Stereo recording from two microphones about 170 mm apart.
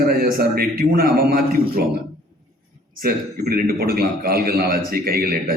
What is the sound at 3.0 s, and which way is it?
A man's voice, 65° right (ahead or behind).